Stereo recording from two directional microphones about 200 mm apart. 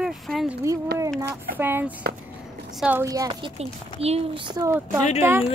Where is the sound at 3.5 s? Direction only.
30° right (ahead or behind); by 5.5 s 10° right (ahead or behind).